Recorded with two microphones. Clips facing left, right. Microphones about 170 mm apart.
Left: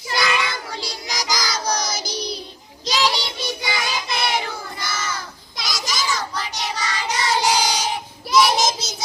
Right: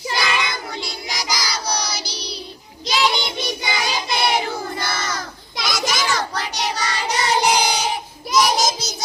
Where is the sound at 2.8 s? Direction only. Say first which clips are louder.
Right 1 dB; 40° left (ahead or behind).